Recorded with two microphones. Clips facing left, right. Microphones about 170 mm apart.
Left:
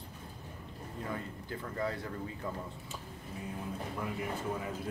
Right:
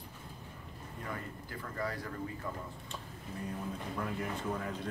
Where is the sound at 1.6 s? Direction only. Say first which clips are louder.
Left 2 dB; 25° left (ahead or behind).